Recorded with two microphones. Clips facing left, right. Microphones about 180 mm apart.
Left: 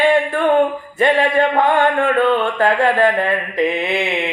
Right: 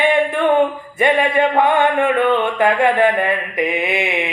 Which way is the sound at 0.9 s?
15° right (ahead or behind).